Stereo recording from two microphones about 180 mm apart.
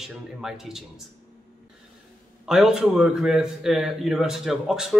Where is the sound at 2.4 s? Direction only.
5° right (ahead or behind).